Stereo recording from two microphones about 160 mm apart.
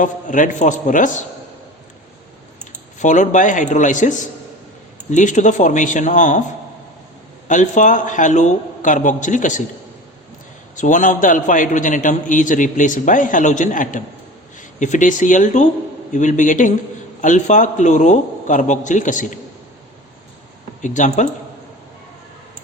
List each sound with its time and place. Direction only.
0.0 s a man's voice: 55° left (ahead or behind)
3.0 s a man's voice: 50° left (ahead or behind)
5.1 s a man's voice: 50° left (ahead or behind)
7.4 s a man's voice: 50° left (ahead or behind)
10.8 s a man's voice: 55° left (ahead or behind)
20.8 s a man's voice: 50° left (ahead or behind)